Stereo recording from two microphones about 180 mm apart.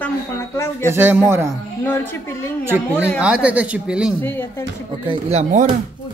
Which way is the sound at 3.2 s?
5° right (ahead or behind).